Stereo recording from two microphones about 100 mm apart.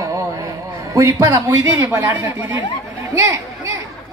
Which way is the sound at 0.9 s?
35° right (ahead or behind).